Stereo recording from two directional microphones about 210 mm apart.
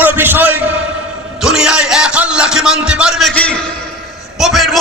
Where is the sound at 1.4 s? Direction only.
5° right (ahead or behind).